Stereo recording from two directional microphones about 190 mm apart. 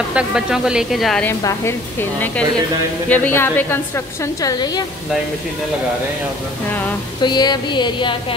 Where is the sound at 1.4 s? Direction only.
15° left (ahead or behind).